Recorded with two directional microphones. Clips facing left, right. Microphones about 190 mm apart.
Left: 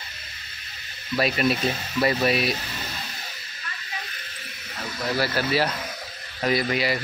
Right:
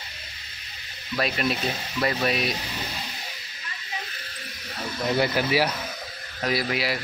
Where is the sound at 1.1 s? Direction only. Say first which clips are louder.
Left 3 dB; centre (ahead or behind).